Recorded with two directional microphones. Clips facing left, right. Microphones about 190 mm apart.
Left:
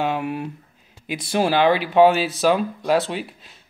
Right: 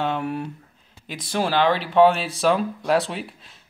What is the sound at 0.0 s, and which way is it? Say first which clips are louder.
Speech: left 1 dB; 10° left (ahead or behind).